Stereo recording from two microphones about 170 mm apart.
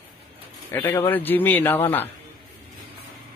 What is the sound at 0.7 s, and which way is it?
Speech, 10° left (ahead or behind).